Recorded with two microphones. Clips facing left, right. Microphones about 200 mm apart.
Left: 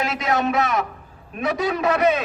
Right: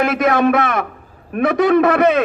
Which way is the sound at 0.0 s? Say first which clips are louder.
Right 8 dB; 55° right (ahead or behind).